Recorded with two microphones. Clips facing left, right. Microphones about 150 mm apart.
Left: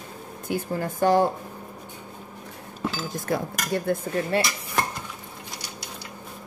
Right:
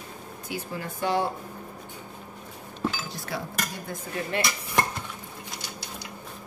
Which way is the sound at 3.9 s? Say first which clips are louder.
Left 11 dB; 60° left (ahead or behind).